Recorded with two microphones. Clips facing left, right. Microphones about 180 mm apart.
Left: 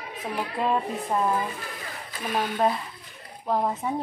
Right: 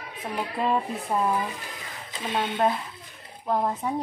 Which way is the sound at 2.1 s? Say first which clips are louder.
Even; 25° right (ahead or behind).